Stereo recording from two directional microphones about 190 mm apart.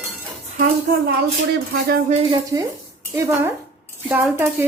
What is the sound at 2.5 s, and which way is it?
Speech, 20° right (ahead or behind).